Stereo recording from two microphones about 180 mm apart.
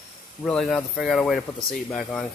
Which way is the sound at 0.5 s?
5° left (ahead or behind).